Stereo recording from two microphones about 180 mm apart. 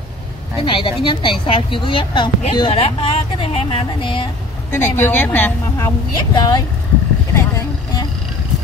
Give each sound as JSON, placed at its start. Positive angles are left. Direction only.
{"t": 0.6, "sound": "a woman's voice", "side_deg": 30}
{"t": 4.7, "sound": "a woman's voice", "side_deg": 10}
{"t": 6.3, "sound": "a woman's voice", "side_deg": 20}
{"t": 7.3, "sound": "vehicle", "side_deg": 20}